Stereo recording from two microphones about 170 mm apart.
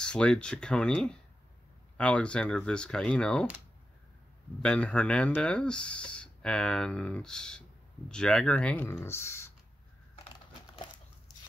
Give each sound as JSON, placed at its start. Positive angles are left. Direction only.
{"t": 0.0, "sound": "speech", "side_deg": 5}
{"t": 4.6, "sound": "speech", "side_deg": 5}